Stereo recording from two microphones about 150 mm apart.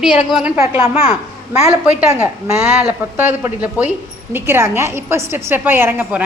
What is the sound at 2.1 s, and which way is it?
A woman's voice, 15° right (ahead or behind).